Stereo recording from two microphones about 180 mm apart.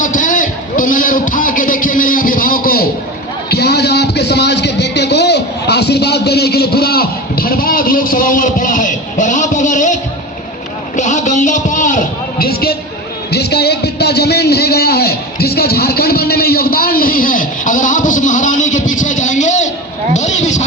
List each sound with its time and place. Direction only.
0.0 s music: 45° left (ahead or behind)
3.5 s a sound: 65° left (ahead or behind); by 19.7 s 40° left (ahead or behind)
20.1 s vehicle: 40° left (ahead or behind)